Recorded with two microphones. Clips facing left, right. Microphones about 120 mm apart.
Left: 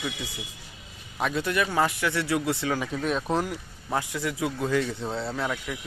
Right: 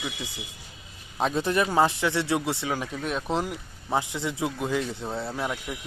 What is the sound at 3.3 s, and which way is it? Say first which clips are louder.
A man's voice: left 1 dB; 15° right (ahead or behind).